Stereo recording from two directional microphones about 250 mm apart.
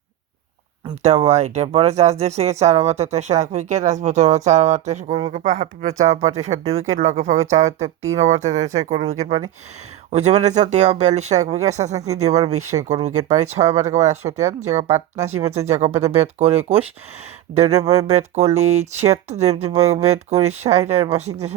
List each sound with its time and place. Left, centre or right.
1.0 s speech: right